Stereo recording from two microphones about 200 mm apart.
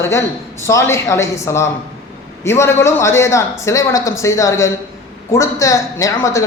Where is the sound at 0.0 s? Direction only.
15° left (ahead or behind).